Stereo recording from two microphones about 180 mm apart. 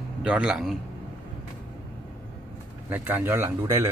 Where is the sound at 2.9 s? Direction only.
10° right (ahead or behind).